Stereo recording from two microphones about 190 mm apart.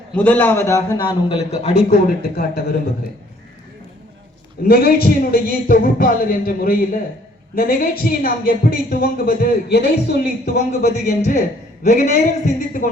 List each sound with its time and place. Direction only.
0.1 s a man's voice: 10° left (ahead or behind)
0.9 s speech: 25° left (ahead or behind)
1.9 s speech: 50° left (ahead or behind)
4.6 s speech: 55° left (ahead or behind)
10.7 s speech: 40° left (ahead or behind)